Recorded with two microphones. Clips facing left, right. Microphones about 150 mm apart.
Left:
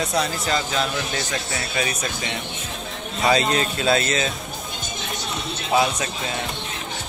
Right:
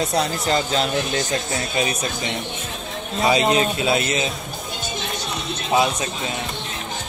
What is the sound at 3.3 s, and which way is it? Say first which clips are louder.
Speech: right 2 dB; 15° right (ahead or behind).